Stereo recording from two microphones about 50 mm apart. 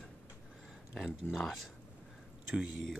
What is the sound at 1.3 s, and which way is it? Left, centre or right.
Speech, centre.